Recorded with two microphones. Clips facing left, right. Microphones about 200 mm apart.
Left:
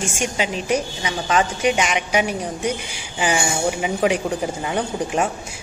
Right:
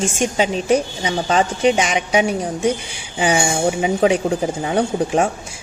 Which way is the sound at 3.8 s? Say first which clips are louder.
Right 5 dB; 30° right (ahead or behind).